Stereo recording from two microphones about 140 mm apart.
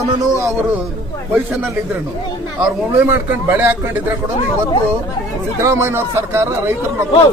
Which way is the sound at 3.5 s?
15° right (ahead or behind).